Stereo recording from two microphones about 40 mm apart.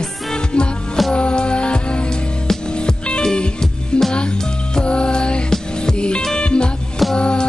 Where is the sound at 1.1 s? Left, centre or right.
Left.